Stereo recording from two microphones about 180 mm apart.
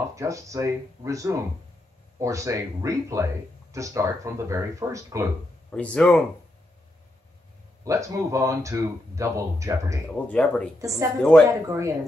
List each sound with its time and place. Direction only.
0.1 s speech: 15° right (ahead or behind)
5.7 s speech: 5° left (ahead or behind)
7.8 s speech: 20° right (ahead or behind)
10.0 s speech: 5° left (ahead or behind)
10.8 s speech: 15° right (ahead or behind)
11.1 s speech: 5° left (ahead or behind)
11.7 s speech: 15° right (ahead or behind)